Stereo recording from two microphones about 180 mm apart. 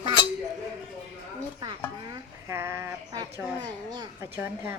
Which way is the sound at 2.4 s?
15° right (ahead or behind).